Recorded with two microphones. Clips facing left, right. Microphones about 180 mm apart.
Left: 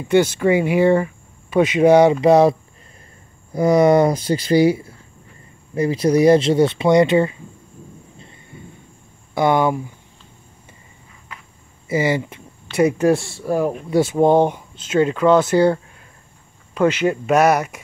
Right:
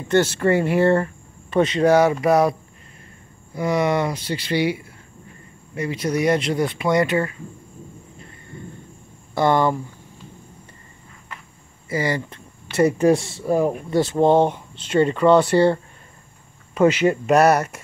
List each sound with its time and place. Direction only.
0.1 s speech: 10° left (ahead or behind)
3.5 s speech: 40° left (ahead or behind); by 7.3 s 25° left (ahead or behind)
8.2 s thunder: 15° left (ahead or behind)
9.3 s speech: centre (ahead or behind)
12.1 s speech: 15° left (ahead or behind)
12.7 s speech: centre (ahead or behind)